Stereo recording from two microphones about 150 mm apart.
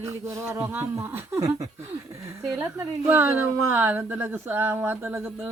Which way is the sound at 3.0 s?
15° right (ahead or behind).